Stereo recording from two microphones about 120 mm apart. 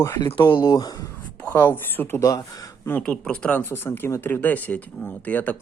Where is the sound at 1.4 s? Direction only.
20° left (ahead or behind).